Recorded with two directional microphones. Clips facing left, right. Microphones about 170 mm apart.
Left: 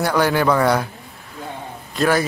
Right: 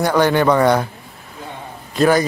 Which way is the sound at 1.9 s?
Centre (ahead or behind).